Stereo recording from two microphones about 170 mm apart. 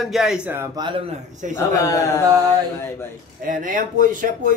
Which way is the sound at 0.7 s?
25° right (ahead or behind).